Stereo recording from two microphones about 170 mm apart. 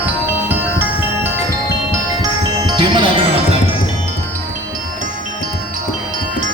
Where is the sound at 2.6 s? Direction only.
25° right (ahead or behind).